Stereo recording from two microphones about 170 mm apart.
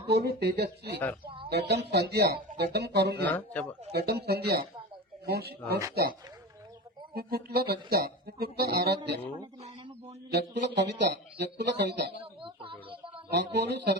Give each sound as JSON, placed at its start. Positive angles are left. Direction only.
{"t": 0.3, "sound": "speech", "side_deg": -70}
{"t": 3.2, "sound": "a man's voice", "side_deg": 10}
{"t": 3.9, "sound": "speech", "side_deg": -70}
{"t": 10.3, "sound": "speech", "side_deg": -90}
{"t": 12.2, "sound": "a sound", "side_deg": -30}
{"t": 13.3, "sound": "speech", "side_deg": -80}